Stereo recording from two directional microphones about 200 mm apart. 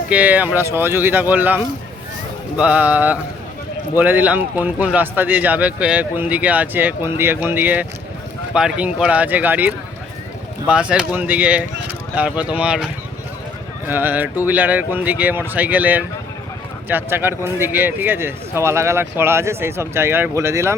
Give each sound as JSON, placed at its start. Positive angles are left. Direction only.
{"t": 0.1, "sound": "speech", "side_deg": -10}